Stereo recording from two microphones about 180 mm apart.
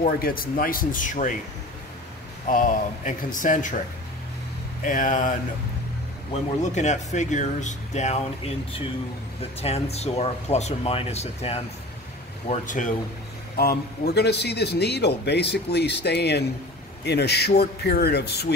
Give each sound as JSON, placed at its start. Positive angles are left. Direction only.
{"t": 0.0, "sound": "speech", "side_deg": 55}
{"t": 2.4, "sound": "speech", "side_deg": 45}
{"t": 4.8, "sound": "speech", "side_deg": 45}
{"t": 9.4, "sound": "speech", "side_deg": 35}
{"t": 13.6, "sound": "speech", "side_deg": 60}